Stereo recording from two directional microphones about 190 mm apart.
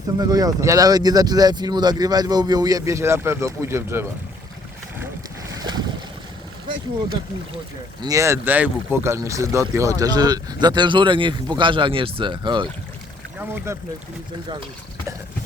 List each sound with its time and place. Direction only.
0.2 s speech: 20° right (ahead or behind)
5.5 s boat: 20° right (ahead or behind)
8.0 s speech: 15° right (ahead or behind)
13.7 s speech: 15° right (ahead or behind)